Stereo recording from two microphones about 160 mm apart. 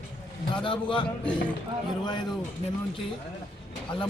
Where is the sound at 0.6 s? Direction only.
30° left (ahead or behind).